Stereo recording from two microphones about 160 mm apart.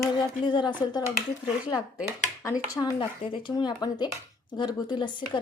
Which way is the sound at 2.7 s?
25° left (ahead or behind).